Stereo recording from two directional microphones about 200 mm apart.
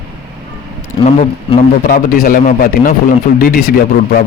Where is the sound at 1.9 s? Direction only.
45° left (ahead or behind).